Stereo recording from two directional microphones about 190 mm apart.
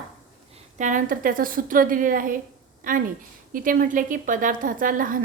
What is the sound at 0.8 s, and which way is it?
A woman's voice, 40° right (ahead or behind).